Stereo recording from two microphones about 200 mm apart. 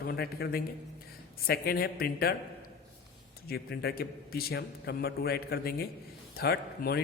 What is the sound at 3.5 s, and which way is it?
A man's voice, 50° left (ahead or behind).